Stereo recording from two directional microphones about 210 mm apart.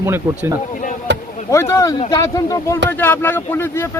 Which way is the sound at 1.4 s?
15° left (ahead or behind).